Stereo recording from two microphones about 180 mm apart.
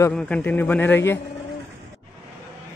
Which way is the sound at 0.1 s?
5° left (ahead or behind).